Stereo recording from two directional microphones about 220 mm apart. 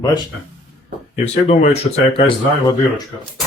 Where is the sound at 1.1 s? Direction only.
30° left (ahead or behind).